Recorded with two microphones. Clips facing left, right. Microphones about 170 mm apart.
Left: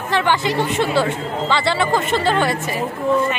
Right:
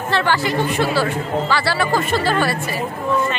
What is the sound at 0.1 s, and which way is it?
Speech, 20° left (ahead or behind).